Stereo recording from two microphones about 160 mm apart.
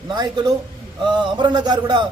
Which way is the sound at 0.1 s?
25° right (ahead or behind).